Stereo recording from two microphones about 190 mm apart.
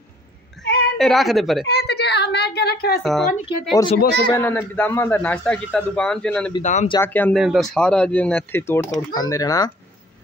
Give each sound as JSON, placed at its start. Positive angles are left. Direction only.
{"t": 0.7, "sound": "a sound", "side_deg": 55}
{"t": 0.9, "sound": "speech", "side_deg": 0}
{"t": 1.7, "sound": "a sound", "side_deg": 60}
{"t": 3.0, "sound": "speech", "side_deg": 0}
{"t": 4.3, "sound": "a man's voice", "side_deg": 15}
{"t": 6.6, "sound": "speech", "side_deg": 40}
{"t": 7.0, "sound": "a man's voice", "side_deg": 10}
{"t": 7.3, "sound": "a man's voice", "side_deg": 0}